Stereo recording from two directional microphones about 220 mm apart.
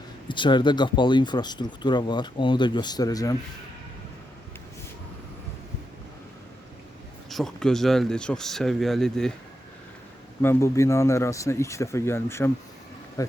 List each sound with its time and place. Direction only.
0.3 s speech: 20° left (ahead or behind)
7.3 s speech: centre (ahead or behind)
10.4 s a man's voice: 10° left (ahead or behind)